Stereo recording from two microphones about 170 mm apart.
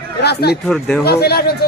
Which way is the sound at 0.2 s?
75° left (ahead or behind).